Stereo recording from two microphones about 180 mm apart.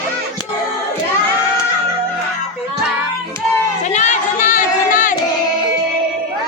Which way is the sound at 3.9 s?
40° left (ahead or behind).